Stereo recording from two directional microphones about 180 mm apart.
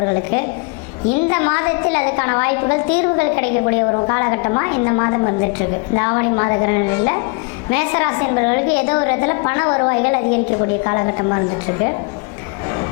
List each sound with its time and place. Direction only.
0.0 s a woman's voice: 25° left (ahead or behind)
12.6 s music: 20° left (ahead or behind)